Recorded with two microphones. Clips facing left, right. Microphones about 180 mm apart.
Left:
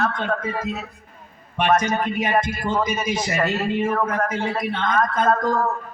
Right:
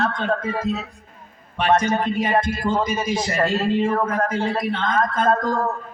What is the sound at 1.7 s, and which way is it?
Speech, 30° right (ahead or behind).